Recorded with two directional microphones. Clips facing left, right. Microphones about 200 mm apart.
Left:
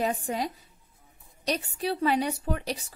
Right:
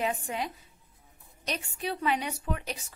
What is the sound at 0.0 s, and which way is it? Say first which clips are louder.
A woman's voice: left 3 dB; 40° left (ahead or behind).